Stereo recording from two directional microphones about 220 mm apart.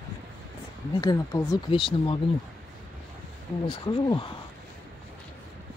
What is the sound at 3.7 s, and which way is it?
Speech, 20° left (ahead or behind).